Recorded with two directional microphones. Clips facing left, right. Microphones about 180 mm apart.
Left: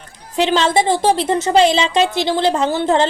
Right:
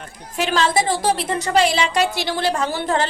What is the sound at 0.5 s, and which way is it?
A woman's voice, 25° left (ahead or behind).